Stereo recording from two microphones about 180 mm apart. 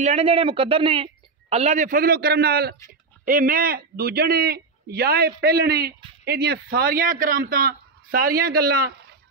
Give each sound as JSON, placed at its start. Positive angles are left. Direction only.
{"t": 0.0, "sound": "speech", "side_deg": -35}
{"t": 2.9, "sound": "speech", "side_deg": -50}